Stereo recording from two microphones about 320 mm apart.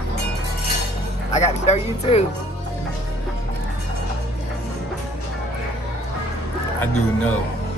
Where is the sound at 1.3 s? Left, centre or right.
Left.